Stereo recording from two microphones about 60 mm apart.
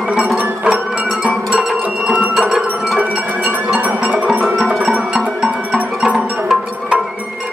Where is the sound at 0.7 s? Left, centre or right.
Centre.